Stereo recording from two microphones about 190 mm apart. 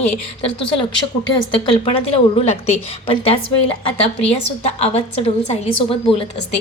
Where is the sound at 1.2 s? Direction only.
25° left (ahead or behind).